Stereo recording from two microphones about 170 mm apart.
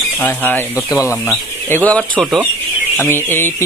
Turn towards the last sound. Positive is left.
turn(degrees=15)  # may be behind; listen again after turning